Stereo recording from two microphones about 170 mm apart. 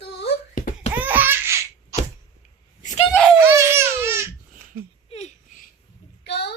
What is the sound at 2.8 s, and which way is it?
Screaming, 45° left (ahead or behind).